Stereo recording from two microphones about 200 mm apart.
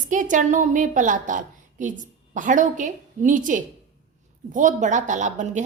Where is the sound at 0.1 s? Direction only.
40° right (ahead or behind).